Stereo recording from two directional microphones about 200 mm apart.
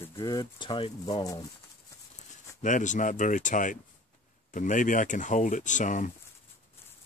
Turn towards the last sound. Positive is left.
turn(degrees=40)  # may be behind; listen again after turning